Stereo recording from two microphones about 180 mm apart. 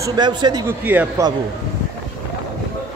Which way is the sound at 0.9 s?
10° right (ahead or behind).